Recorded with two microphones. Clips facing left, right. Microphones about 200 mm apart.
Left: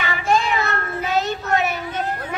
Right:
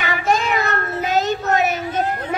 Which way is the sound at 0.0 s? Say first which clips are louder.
Even; 40° right (ahead or behind).